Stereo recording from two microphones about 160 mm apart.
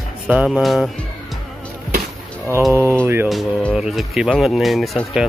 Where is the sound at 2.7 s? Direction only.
15° right (ahead or behind).